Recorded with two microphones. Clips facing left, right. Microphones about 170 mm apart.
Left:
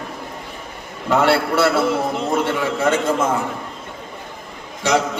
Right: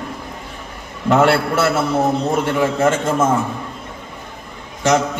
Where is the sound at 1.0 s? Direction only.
45° right (ahead or behind).